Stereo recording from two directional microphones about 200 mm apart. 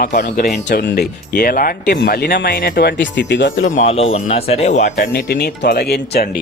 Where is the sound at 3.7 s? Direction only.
35° left (ahead or behind).